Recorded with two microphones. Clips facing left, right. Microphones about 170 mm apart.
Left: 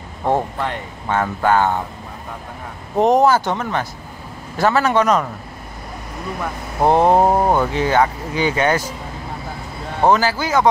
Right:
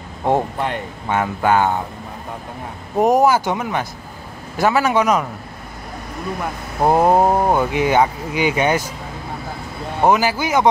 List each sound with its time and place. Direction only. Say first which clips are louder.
0.2 s speech: right 1 dB; 15° right (ahead or behind)
3.0 s speech: even; 10° right (ahead or behind)
6.8 s speech: left 1 dB; 5° right (ahead or behind)
7.7 s speech: right 1 dB; 15° right (ahead or behind)
10.0 s speech: even; 15° right (ahead or behind)